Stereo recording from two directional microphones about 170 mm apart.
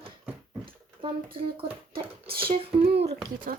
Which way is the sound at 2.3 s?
60° right (ahead or behind).